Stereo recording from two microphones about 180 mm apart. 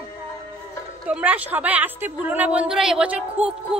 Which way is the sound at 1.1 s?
10° right (ahead or behind).